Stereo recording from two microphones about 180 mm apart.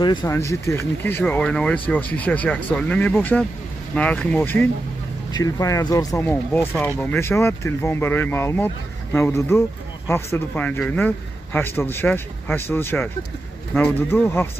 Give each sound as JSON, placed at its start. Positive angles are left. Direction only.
{"t": 0.0, "sound": "speech", "side_deg": 25}